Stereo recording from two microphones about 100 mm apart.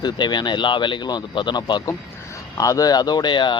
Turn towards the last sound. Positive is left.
turn(degrees=50)  # may be behind; listen again after turning